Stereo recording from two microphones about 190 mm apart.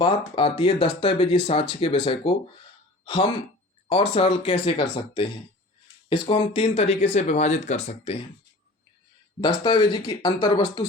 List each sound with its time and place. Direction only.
0.0 s speech: 25° left (ahead or behind)
9.4 s speech: 25° left (ahead or behind)